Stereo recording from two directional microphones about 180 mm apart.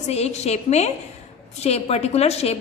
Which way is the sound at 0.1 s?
35° left (ahead or behind).